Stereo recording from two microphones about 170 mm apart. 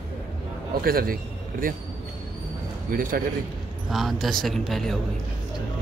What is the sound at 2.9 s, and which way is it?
Speech, 55° right (ahead or behind).